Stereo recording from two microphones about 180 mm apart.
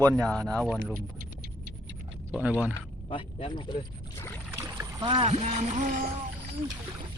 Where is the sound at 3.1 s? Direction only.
30° left (ahead or behind).